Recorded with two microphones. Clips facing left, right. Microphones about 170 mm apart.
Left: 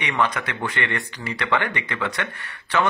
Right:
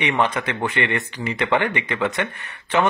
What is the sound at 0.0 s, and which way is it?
Speech, 25° right (ahead or behind).